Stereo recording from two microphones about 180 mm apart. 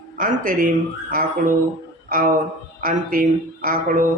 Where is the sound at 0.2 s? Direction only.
50° right (ahead or behind).